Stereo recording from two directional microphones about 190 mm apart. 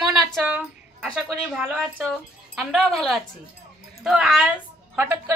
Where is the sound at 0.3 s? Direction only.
5° right (ahead or behind).